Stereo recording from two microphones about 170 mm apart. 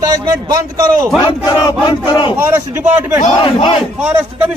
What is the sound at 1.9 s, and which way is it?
Speech, 30° left (ahead or behind).